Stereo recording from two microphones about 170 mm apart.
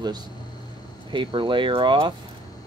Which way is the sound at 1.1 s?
30° right (ahead or behind).